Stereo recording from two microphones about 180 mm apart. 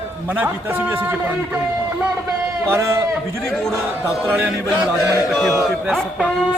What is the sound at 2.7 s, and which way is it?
Speech, 15° right (ahead or behind).